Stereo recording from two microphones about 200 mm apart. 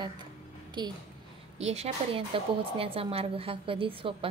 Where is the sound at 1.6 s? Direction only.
30° right (ahead or behind).